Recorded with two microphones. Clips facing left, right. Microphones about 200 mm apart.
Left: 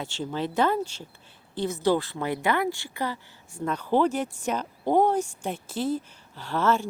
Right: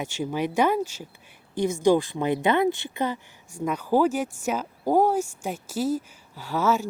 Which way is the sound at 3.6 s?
10° right (ahead or behind).